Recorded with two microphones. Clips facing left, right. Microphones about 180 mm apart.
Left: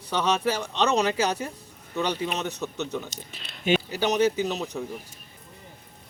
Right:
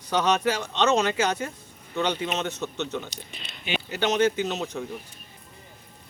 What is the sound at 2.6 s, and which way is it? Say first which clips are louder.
Speech: even; centre (ahead or behind).